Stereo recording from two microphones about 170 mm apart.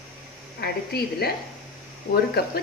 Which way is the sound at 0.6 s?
70° left (ahead or behind).